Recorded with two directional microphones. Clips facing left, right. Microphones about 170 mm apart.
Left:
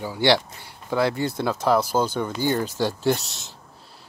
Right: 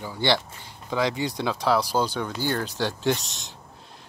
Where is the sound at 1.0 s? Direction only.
15° right (ahead or behind).